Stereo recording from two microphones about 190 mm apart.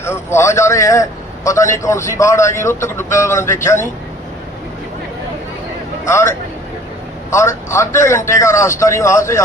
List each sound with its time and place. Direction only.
0.0 s a man's voice: 15° left (ahead or behind)
6.1 s a man's voice: 15° left (ahead or behind)